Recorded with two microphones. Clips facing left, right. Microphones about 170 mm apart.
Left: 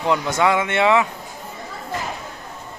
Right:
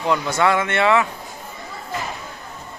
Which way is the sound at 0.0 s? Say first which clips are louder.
Even; 20° left (ahead or behind).